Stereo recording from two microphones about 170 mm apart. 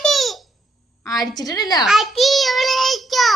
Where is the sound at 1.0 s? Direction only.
20° left (ahead or behind).